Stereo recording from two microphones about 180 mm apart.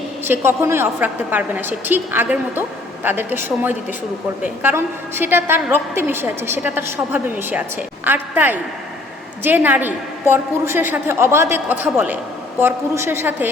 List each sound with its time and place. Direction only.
0.3 s a woman's voice: 15° right (ahead or behind)